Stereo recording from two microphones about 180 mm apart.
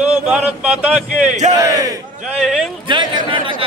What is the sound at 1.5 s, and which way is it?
Speech, 20° right (ahead or behind).